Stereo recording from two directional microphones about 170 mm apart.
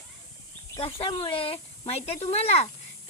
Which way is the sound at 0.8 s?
35° left (ahead or behind).